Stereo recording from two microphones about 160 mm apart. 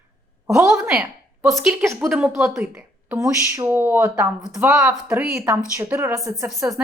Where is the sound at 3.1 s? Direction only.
20° right (ahead or behind).